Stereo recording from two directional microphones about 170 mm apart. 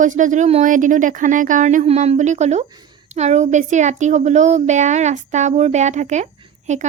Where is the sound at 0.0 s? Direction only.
45° right (ahead or behind).